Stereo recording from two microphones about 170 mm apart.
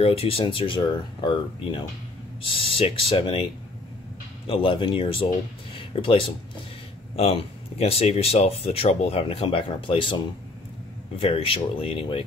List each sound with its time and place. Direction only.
0.0 s speech: 35° left (ahead or behind)
4.5 s speech: 30° left (ahead or behind)
5.7 s a sound: 30° left (ahead or behind)
7.2 s speech: 35° left (ahead or behind)